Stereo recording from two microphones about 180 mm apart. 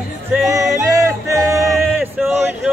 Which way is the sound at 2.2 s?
10° right (ahead or behind).